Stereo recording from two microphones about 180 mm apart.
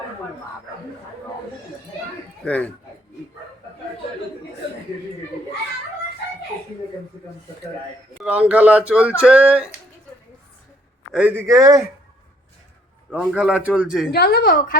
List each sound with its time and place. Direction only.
2.4 s speech: 10° left (ahead or behind)
8.2 s speech: 10° right (ahead or behind)
11.1 s speech: 10° right (ahead or behind)
13.1 s speech: 5° right (ahead or behind)
14.1 s a woman's voice: 60° left (ahead or behind)